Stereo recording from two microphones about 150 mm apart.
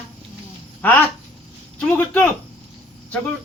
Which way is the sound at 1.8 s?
10° left (ahead or behind).